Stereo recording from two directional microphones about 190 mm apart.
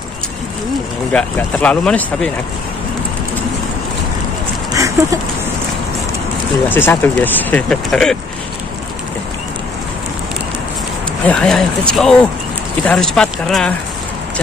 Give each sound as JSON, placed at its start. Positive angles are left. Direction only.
{"t": 1.1, "sound": "speech", "side_deg": 5}
{"t": 4.7, "sound": "a sound", "side_deg": -15}
{"t": 6.7, "sound": "speech", "side_deg": 10}
{"t": 11.2, "sound": "speech", "side_deg": 5}